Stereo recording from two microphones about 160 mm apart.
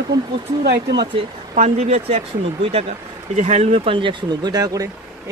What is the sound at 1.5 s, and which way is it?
Speech, 45° right (ahead or behind).